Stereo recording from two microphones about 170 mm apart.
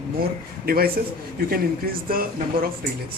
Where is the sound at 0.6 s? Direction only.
60° right (ahead or behind).